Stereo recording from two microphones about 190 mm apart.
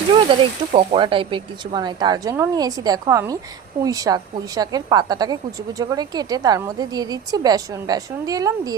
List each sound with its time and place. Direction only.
0.1 s a woman's voice: 25° right (ahead or behind)